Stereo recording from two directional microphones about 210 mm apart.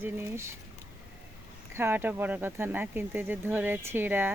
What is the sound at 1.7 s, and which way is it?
Speech, 10° right (ahead or behind).